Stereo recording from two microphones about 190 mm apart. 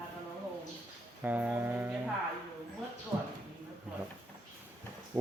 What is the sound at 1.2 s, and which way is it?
Music, 10° right (ahead or behind).